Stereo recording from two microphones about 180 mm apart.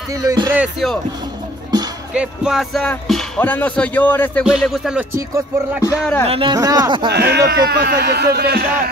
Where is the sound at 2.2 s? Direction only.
Centre (ahead or behind).